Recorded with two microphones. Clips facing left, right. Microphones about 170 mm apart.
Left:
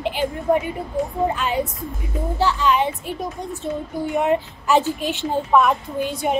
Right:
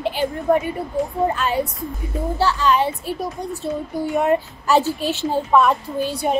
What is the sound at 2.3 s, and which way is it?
A woman's voice, 15° left (ahead or behind).